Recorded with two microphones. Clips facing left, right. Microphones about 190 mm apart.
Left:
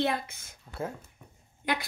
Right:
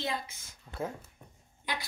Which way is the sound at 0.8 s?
5° left (ahead or behind).